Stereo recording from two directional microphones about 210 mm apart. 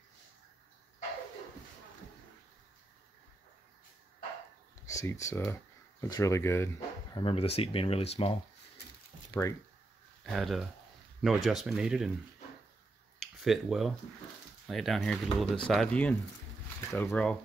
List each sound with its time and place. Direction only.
4.8 s speech: 15° left (ahead or behind)
7.2 s speech: 25° left (ahead or behind)
9.3 s speech: 15° left (ahead or behind)
10.2 s speech: centre (ahead or behind)
13.4 s speech: centre (ahead or behind)